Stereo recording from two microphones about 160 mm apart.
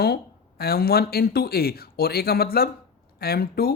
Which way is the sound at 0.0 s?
75° left (ahead or behind).